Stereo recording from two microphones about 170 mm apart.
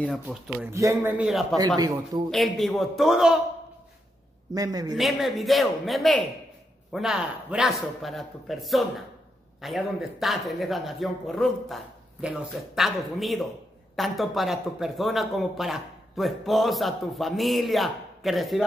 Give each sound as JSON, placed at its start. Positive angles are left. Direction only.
{"t": 0.0, "sound": "speech", "side_deg": 0}
{"t": 0.7, "sound": "speech", "side_deg": -15}
{"t": 1.8, "sound": "speech", "side_deg": -25}
{"t": 2.3, "sound": "speech", "side_deg": 0}
{"t": 4.6, "sound": "speech", "side_deg": -20}
{"t": 4.9, "sound": "speech", "side_deg": 0}